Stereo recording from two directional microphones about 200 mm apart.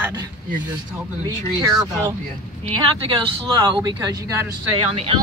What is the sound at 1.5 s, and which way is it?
Speech, 15° right (ahead or behind).